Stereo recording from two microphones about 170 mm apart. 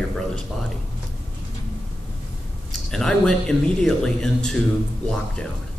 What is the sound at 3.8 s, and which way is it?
Speech, 5° left (ahead or behind).